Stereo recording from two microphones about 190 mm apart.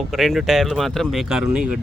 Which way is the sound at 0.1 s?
Centre (ahead or behind).